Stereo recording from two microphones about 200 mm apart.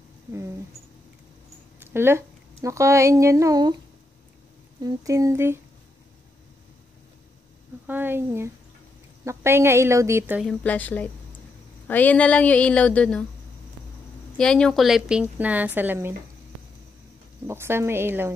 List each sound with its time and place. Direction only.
1.8 s speech: 10° right (ahead or behind)
4.8 s a woman's voice: 15° right (ahead or behind)
7.8 s a woman's voice: 10° right (ahead or behind)
10.4 s a woman's voice: 5° left (ahead or behind)
14.3 s a woman's voice: 5° left (ahead or behind)
17.5 s a woman's voice: 10° right (ahead or behind)